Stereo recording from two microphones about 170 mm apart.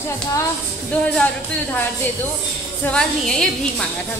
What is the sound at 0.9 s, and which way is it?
Speech, 10° left (ahead or behind).